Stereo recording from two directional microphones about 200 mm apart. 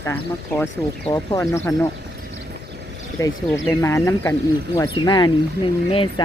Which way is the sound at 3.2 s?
15° left (ahead or behind).